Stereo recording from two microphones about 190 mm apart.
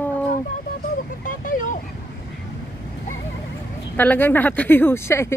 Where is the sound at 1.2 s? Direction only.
45° left (ahead or behind).